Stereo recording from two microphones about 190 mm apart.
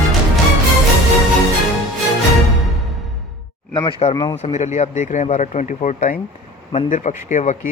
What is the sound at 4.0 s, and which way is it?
Speech, 25° left (ahead or behind).